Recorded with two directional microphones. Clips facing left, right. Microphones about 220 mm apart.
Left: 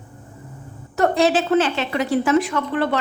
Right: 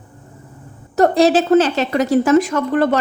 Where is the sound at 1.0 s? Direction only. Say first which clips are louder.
Right 5 dB; 40° right (ahead or behind).